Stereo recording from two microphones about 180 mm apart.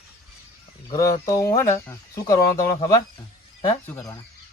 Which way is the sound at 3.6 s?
15° left (ahead or behind).